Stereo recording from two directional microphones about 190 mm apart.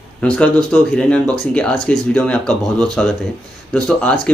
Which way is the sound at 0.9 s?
5° left (ahead or behind).